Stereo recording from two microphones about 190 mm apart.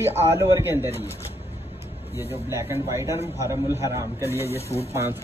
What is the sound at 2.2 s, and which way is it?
A man's voice, 15° right (ahead or behind).